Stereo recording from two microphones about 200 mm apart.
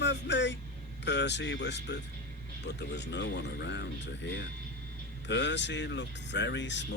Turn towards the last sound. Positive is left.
turn(degrees=60)  # may be behind; listen again after turning